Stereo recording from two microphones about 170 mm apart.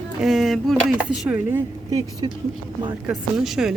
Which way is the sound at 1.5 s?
20° right (ahead or behind).